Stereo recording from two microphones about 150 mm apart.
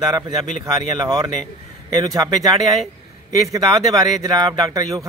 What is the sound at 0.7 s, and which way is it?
Speech, 25° right (ahead or behind).